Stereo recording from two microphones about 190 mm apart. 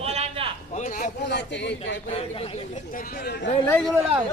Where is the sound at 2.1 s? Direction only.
30° left (ahead or behind).